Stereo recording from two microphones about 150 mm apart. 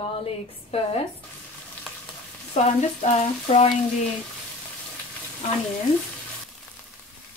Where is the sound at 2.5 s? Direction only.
50° left (ahead or behind).